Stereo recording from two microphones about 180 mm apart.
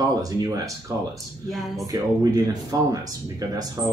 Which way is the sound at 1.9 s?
20° right (ahead or behind).